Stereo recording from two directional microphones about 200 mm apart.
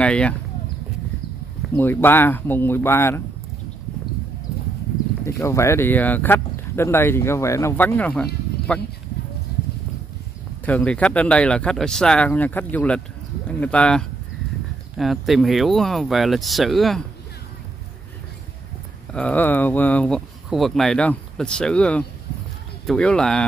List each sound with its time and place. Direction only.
0.0 s speech: 5° left (ahead or behind)
1.8 s speech: 10° left (ahead or behind)
5.2 s speech: 15° left (ahead or behind)
10.6 s speech: 5° left (ahead or behind)
19.1 s speech: 5° left (ahead or behind)